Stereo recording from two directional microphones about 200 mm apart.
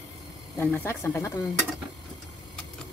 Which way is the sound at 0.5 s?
10° left (ahead or behind).